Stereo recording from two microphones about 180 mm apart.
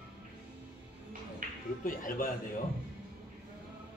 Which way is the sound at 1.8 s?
50° left (ahead or behind).